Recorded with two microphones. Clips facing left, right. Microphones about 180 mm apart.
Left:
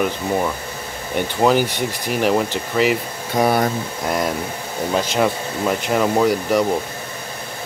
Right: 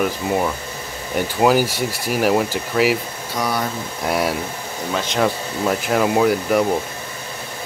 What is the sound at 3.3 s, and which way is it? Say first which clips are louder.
Speech: left 6 dB; 50° left (ahead or behind).